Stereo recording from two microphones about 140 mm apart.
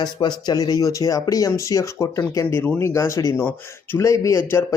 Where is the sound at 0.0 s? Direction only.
30° left (ahead or behind).